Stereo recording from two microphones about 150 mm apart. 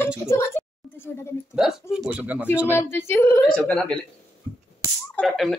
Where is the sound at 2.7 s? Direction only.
15° left (ahead or behind).